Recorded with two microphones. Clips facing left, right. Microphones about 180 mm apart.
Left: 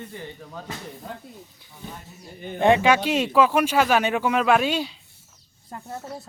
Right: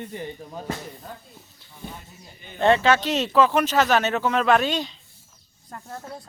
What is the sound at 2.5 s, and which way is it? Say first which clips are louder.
Speech: left 1 dB; 15° left (ahead or behind).